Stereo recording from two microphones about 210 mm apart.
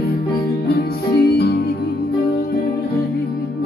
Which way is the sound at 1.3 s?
50° left (ahead or behind).